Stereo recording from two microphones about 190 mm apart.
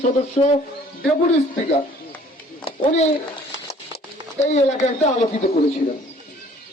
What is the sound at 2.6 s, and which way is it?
Speech, 35° left (ahead or behind).